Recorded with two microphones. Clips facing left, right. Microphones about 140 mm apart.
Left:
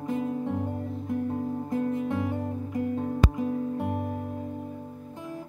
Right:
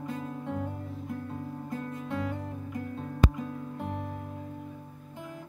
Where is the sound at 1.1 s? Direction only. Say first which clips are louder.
Left 10 dB; 25° left (ahead or behind).